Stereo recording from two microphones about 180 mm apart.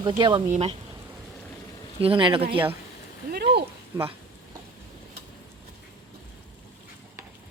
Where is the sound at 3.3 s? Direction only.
65° right (ahead or behind).